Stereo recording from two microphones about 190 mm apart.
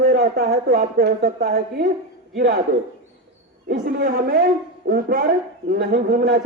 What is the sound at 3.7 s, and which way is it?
A man's voice, 50° right (ahead or behind).